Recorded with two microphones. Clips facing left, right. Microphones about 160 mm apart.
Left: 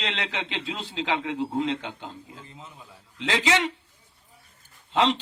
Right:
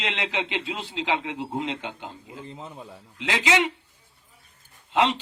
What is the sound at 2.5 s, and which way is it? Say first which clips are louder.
Speech: right 6 dB; 40° right (ahead or behind).